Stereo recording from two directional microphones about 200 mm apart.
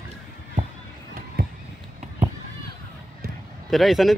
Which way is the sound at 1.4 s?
50° right (ahead or behind).